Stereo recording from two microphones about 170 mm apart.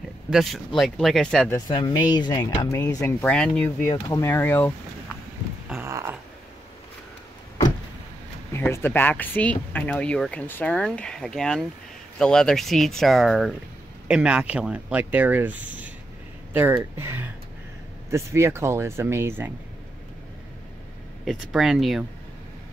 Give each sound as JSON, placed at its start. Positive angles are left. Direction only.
{"t": 0.3, "sound": "speech", "side_deg": 0}
{"t": 1.7, "sound": "speech", "side_deg": 25}
{"t": 5.8, "sound": "a sound", "side_deg": -15}
{"t": 8.5, "sound": "speech", "side_deg": 15}
{"t": 21.3, "sound": "speech", "side_deg": 0}